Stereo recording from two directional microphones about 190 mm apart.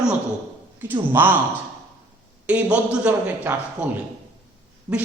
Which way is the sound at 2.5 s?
5° right (ahead or behind).